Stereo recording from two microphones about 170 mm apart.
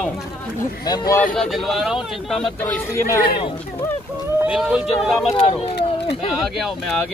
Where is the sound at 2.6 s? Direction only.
15° left (ahead or behind).